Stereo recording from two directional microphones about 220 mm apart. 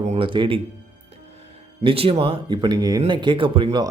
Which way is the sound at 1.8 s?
25° right (ahead or behind).